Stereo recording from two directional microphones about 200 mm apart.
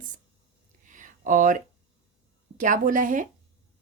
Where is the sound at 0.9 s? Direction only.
40° right (ahead or behind).